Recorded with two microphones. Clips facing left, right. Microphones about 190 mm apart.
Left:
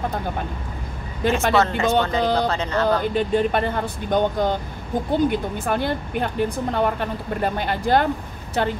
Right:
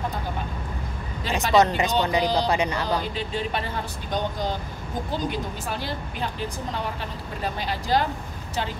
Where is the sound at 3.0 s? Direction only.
55° left (ahead or behind).